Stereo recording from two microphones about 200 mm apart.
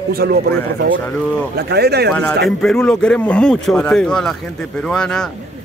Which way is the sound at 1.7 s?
55° right (ahead or behind).